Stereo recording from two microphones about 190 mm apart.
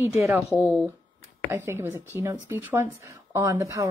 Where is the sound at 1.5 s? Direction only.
10° right (ahead or behind).